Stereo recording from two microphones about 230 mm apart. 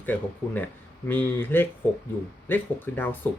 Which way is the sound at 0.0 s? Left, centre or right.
Centre.